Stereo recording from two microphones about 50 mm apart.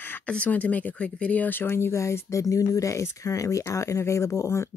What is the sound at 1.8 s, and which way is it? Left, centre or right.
Speech, left.